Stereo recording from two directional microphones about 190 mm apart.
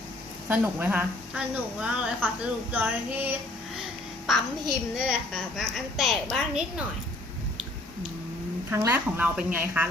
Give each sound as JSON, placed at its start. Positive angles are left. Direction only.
{"t": 0.4, "sound": "a woman's voice", "side_deg": -10}
{"t": 8.7, "sound": "a woman's voice", "side_deg": -10}